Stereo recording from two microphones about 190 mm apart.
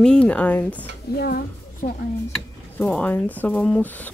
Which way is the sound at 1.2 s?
50° left (ahead or behind).